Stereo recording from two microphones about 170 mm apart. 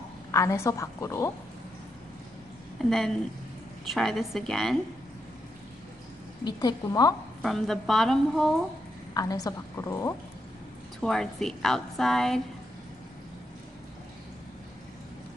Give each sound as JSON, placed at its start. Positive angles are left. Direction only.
{"t": 0.3, "sound": "a woman's voice", "side_deg": 15}
{"t": 2.8, "sound": "a woman's voice", "side_deg": 0}
{"t": 6.4, "sound": "a woman's voice", "side_deg": 25}
{"t": 7.4, "sound": "a woman's voice", "side_deg": 0}
{"t": 9.1, "sound": "a woman's voice", "side_deg": 20}
{"t": 11.0, "sound": "a woman's voice", "side_deg": 5}